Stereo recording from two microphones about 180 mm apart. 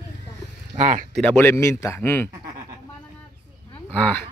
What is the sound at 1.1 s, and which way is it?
Speech, 10° left (ahead or behind).